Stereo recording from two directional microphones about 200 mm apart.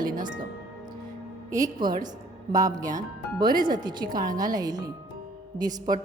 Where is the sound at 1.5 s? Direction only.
20° right (ahead or behind).